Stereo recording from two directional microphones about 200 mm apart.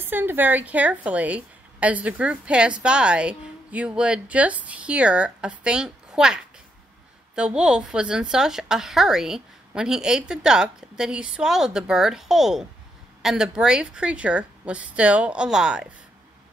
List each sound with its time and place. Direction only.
0.0 s a woman's voice: 10° right (ahead or behind)